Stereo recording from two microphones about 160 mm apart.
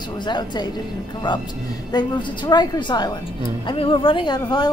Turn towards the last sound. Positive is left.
turn(degrees=25)  # may be behind; listen again after turning